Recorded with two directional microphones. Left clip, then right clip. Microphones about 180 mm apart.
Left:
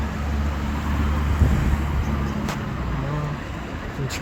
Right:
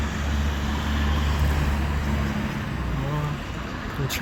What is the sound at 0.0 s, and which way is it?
Vehicle, 55° right (ahead or behind).